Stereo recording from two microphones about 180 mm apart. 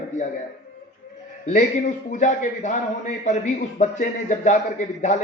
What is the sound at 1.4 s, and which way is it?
A man's voice, 45° left (ahead or behind).